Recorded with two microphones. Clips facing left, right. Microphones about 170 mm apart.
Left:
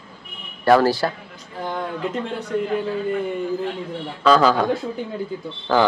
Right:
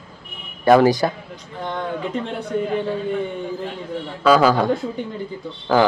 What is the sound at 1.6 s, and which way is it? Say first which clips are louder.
Speech: even; centre (ahead or behind).